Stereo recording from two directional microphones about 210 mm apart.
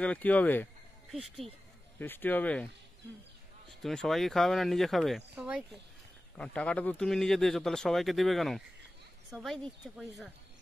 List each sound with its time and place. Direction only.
0.0 s speech: 5° left (ahead or behind)
2.0 s speech: 10° left (ahead or behind)
3.8 s speech: centre (ahead or behind)